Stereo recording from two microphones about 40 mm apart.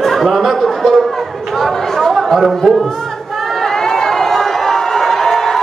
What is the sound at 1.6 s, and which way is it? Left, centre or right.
Chatter, centre.